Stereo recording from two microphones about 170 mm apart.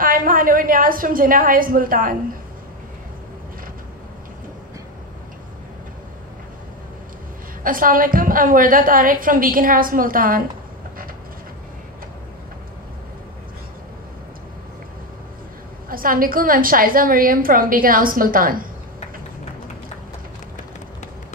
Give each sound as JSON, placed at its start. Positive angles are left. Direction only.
{"t": 0.0, "sound": "a woman's voice", "side_deg": -55}
{"t": 7.6, "sound": "a woman's voice", "side_deg": -55}
{"t": 15.9, "sound": "a woman's voice", "side_deg": -55}